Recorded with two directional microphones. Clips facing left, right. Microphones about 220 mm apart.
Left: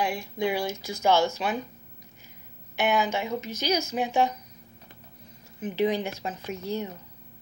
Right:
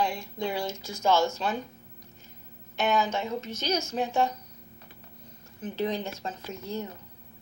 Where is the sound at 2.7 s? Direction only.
15° left (ahead or behind).